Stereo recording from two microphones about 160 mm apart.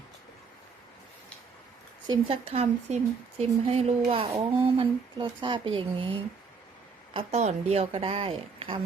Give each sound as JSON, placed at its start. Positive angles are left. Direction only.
{"t": 2.0, "sound": "speech", "side_deg": -35}